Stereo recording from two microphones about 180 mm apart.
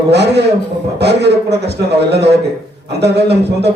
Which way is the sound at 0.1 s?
70° right (ahead or behind).